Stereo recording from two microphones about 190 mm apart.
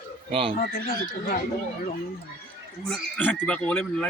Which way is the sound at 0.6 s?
50° left (ahead or behind).